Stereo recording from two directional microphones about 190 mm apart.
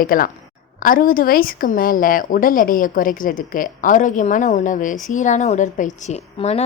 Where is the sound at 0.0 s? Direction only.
50° left (ahead or behind).